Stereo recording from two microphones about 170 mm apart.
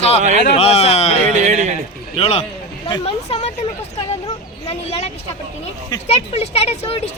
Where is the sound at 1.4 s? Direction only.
45° right (ahead or behind).